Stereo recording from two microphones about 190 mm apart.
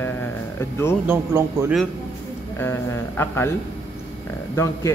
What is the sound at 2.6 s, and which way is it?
Speech, 10° left (ahead or behind).